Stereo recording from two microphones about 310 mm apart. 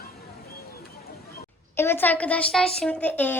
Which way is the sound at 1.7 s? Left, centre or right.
Centre.